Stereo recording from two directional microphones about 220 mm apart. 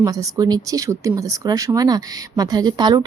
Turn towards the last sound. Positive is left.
turn(degrees=-20)  # may be behind; listen again after turning